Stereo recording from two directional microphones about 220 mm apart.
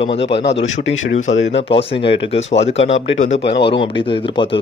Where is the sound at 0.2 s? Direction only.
50° left (ahead or behind).